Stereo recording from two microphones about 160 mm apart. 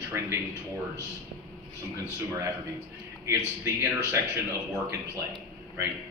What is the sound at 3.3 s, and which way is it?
Speech, 15° right (ahead or behind).